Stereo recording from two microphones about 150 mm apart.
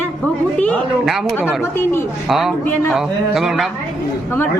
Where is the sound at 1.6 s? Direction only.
15° left (ahead or behind).